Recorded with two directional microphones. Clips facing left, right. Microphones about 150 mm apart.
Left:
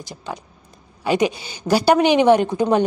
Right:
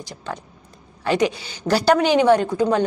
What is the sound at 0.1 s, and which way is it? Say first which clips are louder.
A woman's voice: left 1 dB; 15° left (ahead or behind).